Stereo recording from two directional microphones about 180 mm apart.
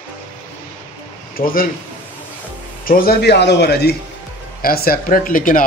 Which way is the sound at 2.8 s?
55° left (ahead or behind).